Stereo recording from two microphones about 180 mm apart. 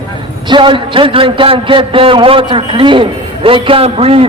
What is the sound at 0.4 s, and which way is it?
A man's voice, 25° right (ahead or behind).